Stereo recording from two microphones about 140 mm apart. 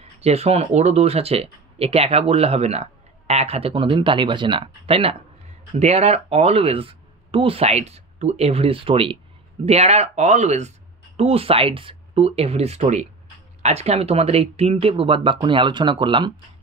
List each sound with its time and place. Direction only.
0.0 s speech: 50° right (ahead or behind)